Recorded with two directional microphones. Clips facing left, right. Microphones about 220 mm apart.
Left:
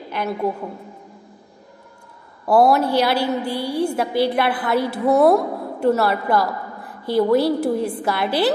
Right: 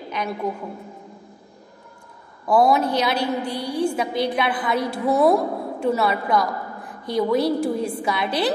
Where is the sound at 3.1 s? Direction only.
25° left (ahead or behind).